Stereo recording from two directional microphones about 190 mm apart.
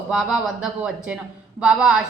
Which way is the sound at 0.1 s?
Centre (ahead or behind).